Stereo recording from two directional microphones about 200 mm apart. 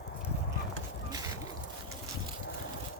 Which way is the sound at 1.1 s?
20° right (ahead or behind).